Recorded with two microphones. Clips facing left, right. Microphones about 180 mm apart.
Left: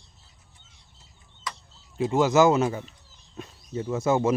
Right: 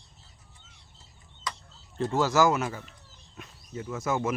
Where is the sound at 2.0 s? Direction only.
15° left (ahead or behind).